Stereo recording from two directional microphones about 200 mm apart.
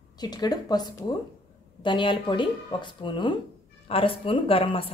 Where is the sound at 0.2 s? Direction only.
20° left (ahead or behind).